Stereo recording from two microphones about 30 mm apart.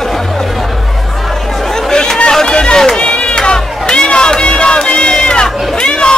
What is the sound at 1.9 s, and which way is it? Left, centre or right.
Chatter, left.